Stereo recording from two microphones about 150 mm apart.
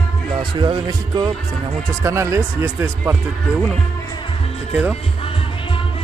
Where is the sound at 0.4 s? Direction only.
30° right (ahead or behind).